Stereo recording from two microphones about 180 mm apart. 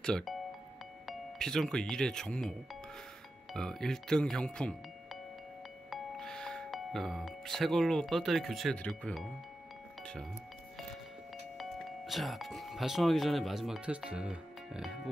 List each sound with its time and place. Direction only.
0.0 s speech: centre (ahead or behind)
12.1 s speech: centre (ahead or behind)